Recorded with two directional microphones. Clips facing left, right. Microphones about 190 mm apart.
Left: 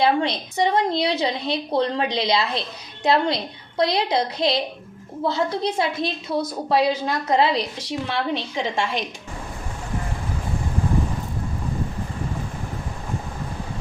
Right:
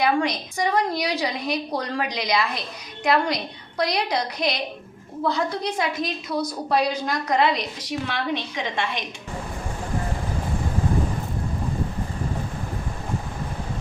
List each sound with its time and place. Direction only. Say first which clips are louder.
0.0 s a woman's voice: left 2 dB; 25° left (ahead or behind)